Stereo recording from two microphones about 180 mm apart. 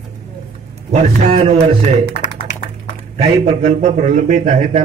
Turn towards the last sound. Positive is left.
turn(degrees=-40)  # may be behind; listen again after turning